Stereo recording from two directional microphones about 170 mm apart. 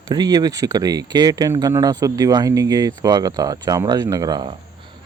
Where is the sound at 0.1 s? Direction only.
25° right (ahead or behind).